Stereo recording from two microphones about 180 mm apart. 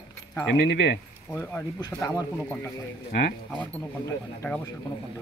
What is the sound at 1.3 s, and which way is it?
Speech, 10° left (ahead or behind).